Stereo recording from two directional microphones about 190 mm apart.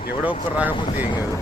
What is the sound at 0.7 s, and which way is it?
Speech, 30° left (ahead or behind).